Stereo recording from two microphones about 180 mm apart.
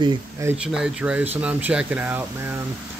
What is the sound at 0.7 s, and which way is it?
Speech, 5° right (ahead or behind).